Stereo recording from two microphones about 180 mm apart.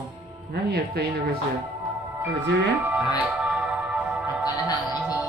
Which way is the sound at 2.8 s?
5° right (ahead or behind).